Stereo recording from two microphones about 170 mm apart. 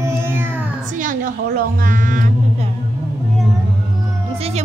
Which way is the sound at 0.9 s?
50° right (ahead or behind).